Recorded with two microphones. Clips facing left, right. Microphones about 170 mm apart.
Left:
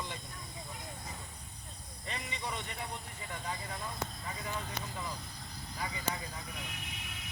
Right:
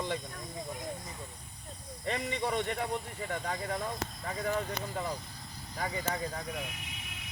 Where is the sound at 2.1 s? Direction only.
55° right (ahead or behind).